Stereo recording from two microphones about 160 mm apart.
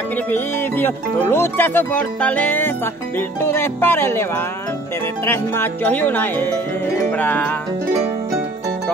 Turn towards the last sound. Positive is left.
turn(degrees=10)  # may be behind; listen again after turning